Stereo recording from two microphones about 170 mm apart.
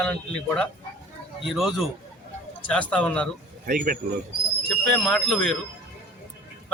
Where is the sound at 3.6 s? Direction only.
55° right (ahead or behind).